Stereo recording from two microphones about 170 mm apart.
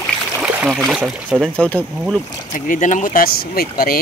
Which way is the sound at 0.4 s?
5° right (ahead or behind).